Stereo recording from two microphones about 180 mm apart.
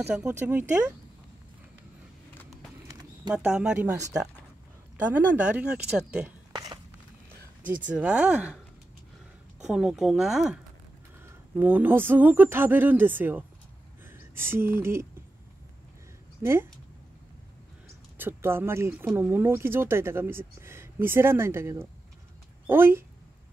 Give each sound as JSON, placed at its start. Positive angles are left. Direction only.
{"t": 0.0, "sound": "speech", "side_deg": -10}
{"t": 2.9, "sound": "a sound", "side_deg": -20}
{"t": 3.3, "sound": "speech", "side_deg": -5}
{"t": 5.1, "sound": "speech", "side_deg": -10}
{"t": 6.5, "sound": "a sound", "side_deg": -25}
{"t": 7.6, "sound": "speech", "side_deg": -10}
{"t": 9.6, "sound": "speech", "side_deg": -5}
{"t": 16.4, "sound": "speech", "side_deg": -10}
{"t": 18.1, "sound": "speech", "side_deg": -10}